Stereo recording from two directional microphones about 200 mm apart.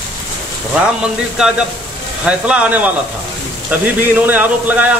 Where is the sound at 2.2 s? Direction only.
5° right (ahead or behind).